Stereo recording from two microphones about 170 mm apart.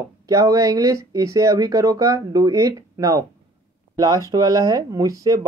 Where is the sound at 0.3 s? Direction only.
20° right (ahead or behind).